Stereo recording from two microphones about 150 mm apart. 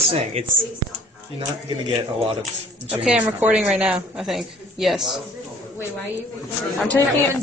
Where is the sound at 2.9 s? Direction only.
5° right (ahead or behind).